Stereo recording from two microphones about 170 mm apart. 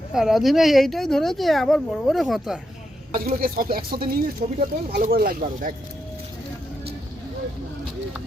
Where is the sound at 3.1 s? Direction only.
60° right (ahead or behind).